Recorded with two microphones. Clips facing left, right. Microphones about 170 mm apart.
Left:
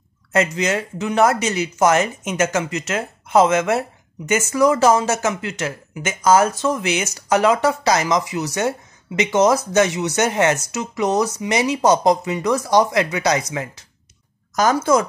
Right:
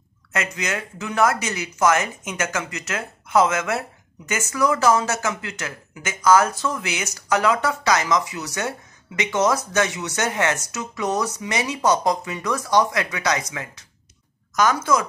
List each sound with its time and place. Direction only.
0.3 s a woman's voice: 30° left (ahead or behind)